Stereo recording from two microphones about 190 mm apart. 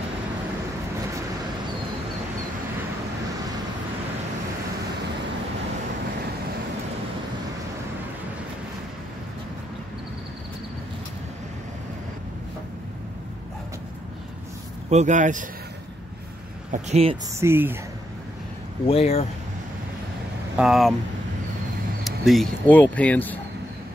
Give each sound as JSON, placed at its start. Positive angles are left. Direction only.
{"t": 14.9, "sound": "speech", "side_deg": -40}
{"t": 16.7, "sound": "speech", "side_deg": -35}
{"t": 17.3, "sound": "speech", "side_deg": -15}
{"t": 18.9, "sound": "speech", "side_deg": 30}
{"t": 20.5, "sound": "speech", "side_deg": 0}
{"t": 22.0, "sound": "speech", "side_deg": 0}